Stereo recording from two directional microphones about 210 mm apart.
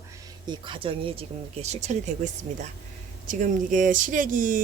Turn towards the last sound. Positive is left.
turn(degrees=-40)  # may be behind; listen again after turning